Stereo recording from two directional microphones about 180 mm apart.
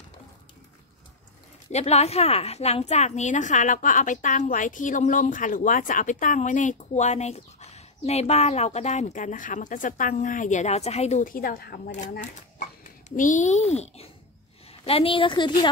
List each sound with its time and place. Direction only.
1.7 s a woman's voice: 35° left (ahead or behind)